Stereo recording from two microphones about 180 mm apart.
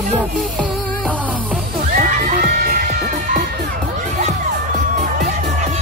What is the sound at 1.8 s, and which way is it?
Children shouting, 50° right (ahead or behind).